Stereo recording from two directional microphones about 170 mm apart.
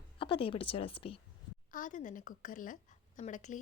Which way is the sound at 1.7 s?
50° left (ahead or behind).